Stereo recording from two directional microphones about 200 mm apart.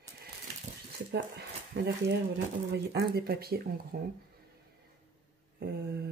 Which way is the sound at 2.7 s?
55° right (ahead or behind).